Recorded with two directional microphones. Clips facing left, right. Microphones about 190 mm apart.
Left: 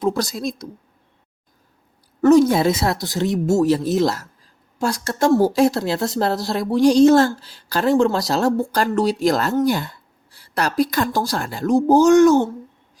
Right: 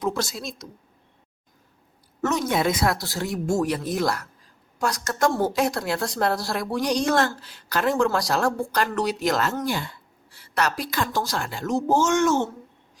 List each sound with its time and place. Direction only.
0.0 s speech: 35° left (ahead or behind)
2.2 s speech: 35° left (ahead or behind)